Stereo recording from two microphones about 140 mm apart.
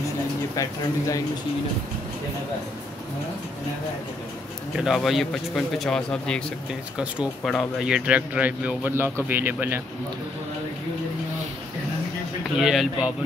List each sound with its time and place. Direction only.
0.6 s speech: 25° left (ahead or behind)
4.7 s a man's voice: centre (ahead or behind)
12.5 s a man's voice: 5° right (ahead or behind)